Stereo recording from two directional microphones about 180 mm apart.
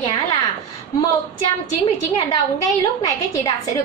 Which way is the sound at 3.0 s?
15° left (ahead or behind).